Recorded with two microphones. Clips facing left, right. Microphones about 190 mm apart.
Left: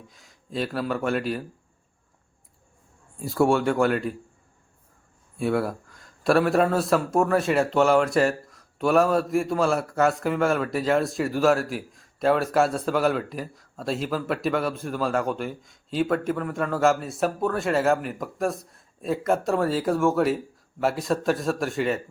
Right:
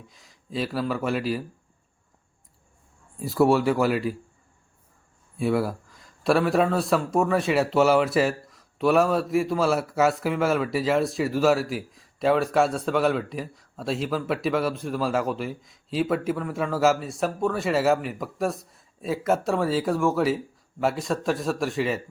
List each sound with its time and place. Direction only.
0.1 s a man's voice: centre (ahead or behind)
3.2 s a man's voice: centre (ahead or behind)
5.4 s a man's voice: centre (ahead or behind)